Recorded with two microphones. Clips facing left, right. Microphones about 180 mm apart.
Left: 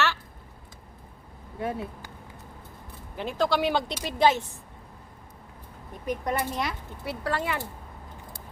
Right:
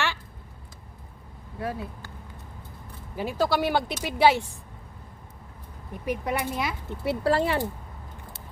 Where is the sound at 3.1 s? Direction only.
5° right (ahead or behind).